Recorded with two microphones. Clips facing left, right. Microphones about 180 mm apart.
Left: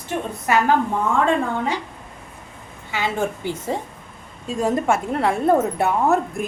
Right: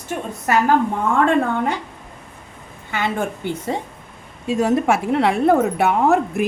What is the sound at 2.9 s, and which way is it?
Speech, 55° right (ahead or behind).